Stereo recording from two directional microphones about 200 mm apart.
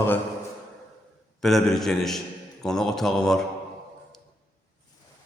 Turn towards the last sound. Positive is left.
turn(degrees=0)  # may be behind; listen again after turning